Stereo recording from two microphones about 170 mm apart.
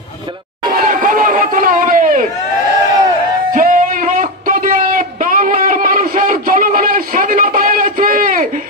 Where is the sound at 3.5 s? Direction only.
50° right (ahead or behind).